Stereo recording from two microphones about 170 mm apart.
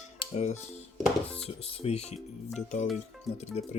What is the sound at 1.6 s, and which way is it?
Speech, 40° left (ahead or behind).